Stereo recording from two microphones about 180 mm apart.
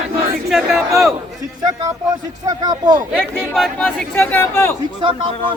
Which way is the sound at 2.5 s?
20° right (ahead or behind).